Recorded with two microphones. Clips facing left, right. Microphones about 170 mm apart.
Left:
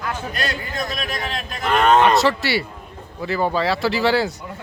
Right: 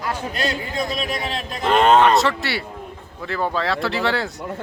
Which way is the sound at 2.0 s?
Centre (ahead or behind).